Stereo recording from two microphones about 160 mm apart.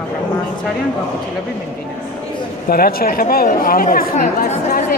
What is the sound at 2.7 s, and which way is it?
Speech, 70° left (ahead or behind).